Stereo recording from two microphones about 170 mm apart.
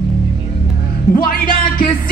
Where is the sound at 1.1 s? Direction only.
55° left (ahead or behind).